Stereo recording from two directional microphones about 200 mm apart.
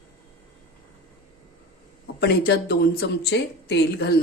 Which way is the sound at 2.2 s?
55° left (ahead or behind).